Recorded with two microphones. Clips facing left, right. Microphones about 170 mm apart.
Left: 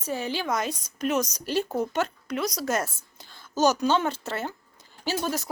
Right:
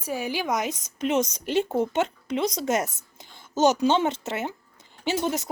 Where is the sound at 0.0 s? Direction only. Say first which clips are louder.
Right 1 dB; 10° right (ahead or behind).